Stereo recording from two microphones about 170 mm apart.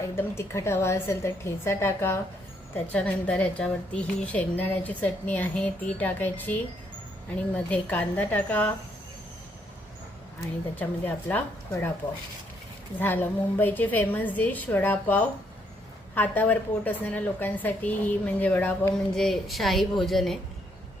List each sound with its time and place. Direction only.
0.2 s a woman's voice: 15° left (ahead or behind)
10.8 s a woman's voice: 10° left (ahead or behind)
13.0 s a woman's voice: 10° left (ahead or behind)